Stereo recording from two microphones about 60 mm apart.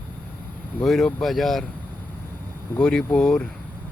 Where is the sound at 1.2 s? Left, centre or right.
Centre.